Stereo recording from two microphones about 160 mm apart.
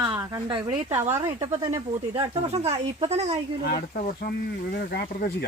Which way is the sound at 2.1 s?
40° right (ahead or behind).